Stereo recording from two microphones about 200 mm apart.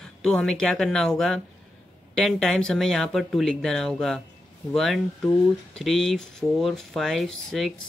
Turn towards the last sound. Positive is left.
turn(degrees=0)  # may be behind; listen again after turning